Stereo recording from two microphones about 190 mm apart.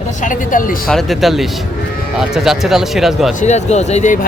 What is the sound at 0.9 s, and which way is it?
Speech, centre (ahead or behind).